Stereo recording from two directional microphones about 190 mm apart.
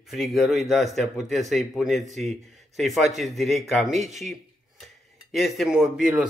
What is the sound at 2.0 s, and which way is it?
Speech, 40° right (ahead or behind).